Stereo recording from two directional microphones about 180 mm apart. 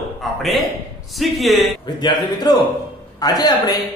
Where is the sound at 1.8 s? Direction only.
25° left (ahead or behind).